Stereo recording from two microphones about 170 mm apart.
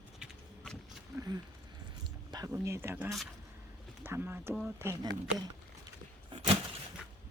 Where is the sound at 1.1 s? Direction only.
20° right (ahead or behind).